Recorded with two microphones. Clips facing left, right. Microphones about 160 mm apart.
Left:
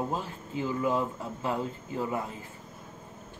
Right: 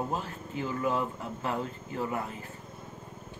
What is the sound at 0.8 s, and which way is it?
Speech, 15° left (ahead or behind).